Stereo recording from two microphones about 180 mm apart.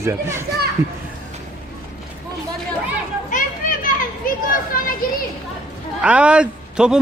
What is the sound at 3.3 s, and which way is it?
Children playing, 45° left (ahead or behind).